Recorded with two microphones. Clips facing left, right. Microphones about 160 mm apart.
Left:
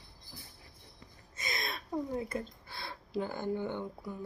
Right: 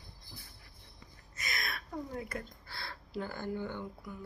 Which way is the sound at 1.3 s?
25° left (ahead or behind).